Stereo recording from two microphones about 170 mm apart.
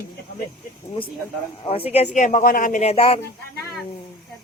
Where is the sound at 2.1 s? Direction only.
50° left (ahead or behind).